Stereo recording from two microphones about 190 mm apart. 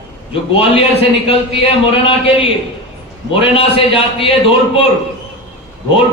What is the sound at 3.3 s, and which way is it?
A man's voice, 30° left (ahead or behind).